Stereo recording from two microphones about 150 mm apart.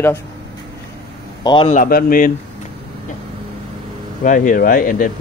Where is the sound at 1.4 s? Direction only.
30° left (ahead or behind).